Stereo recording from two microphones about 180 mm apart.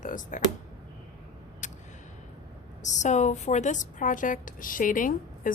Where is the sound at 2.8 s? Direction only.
40° left (ahead or behind).